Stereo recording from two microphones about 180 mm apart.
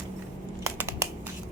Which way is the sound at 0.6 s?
15° right (ahead or behind).